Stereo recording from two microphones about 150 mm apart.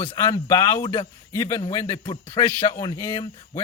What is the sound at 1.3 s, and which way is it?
Speech, 20° left (ahead or behind).